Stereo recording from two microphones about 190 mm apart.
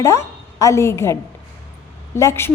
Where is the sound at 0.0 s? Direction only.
15° left (ahead or behind).